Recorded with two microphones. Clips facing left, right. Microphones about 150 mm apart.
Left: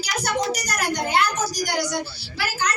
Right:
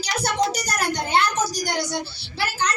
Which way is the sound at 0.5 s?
30° right (ahead or behind).